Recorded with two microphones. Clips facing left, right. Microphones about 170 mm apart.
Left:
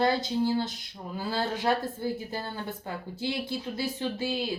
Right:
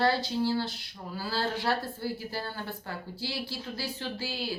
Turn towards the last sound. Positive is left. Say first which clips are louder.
# left 5 dB
turn(degrees=20)  # may be behind; listen again after turning